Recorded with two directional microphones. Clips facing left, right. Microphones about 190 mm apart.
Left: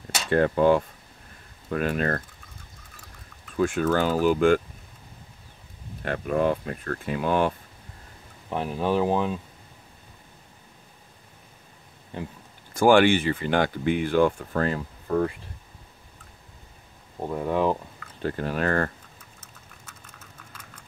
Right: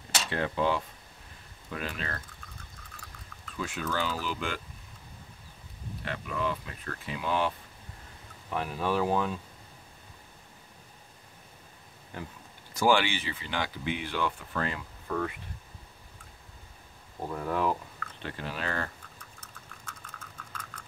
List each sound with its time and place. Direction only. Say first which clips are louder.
0.3 s speech: left 10 dB; 50° left (ahead or behind)
3.5 s speech: left 11 dB; 50° left (ahead or behind)
6.0 s speech: left 9 dB; 50° left (ahead or behind)
8.5 s speech: left 5 dB; 25° left (ahead or behind)
12.1 s speech: left 6 dB; 25° left (ahead or behind)
12.7 s speech: left 8 dB; 50° left (ahead or behind); by 15.3 s 35° left (ahead or behind)
17.3 s speech: left 6 dB; 25° left (ahead or behind)
18.2 s speech: left 10 dB; 45° left (ahead or behind)
19.8 s vehicle: right 4 dB; 5° left (ahead or behind)